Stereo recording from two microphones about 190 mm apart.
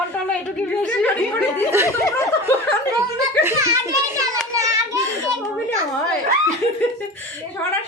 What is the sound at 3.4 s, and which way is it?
Children playing, 15° right (ahead or behind).